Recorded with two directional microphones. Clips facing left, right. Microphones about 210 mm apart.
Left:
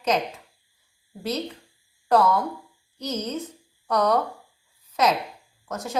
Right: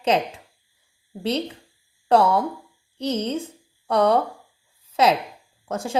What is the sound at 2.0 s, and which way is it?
A woman's voice, 30° right (ahead or behind).